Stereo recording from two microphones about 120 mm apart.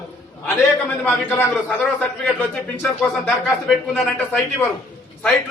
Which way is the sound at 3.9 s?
10° left (ahead or behind).